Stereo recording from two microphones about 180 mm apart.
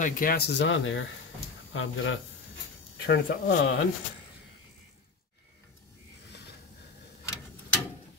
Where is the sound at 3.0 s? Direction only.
60° left (ahead or behind).